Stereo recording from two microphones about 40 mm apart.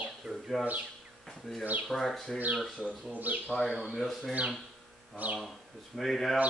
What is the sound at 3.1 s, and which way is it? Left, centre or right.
Speech, right.